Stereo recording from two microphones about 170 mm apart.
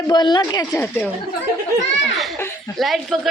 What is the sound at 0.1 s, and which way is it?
Speech, 25° left (ahead or behind).